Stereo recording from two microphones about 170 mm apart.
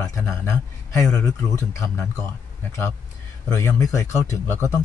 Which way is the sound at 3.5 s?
20° left (ahead or behind).